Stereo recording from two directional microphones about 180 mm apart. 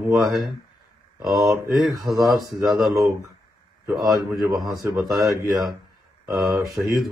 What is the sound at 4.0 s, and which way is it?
Speech, 20° right (ahead or behind).